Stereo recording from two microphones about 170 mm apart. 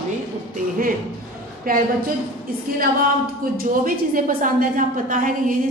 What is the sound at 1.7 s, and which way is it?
Speech, 55° right (ahead or behind).